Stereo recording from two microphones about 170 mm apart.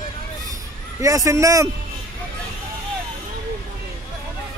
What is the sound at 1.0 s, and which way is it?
Speech, 20° right (ahead or behind).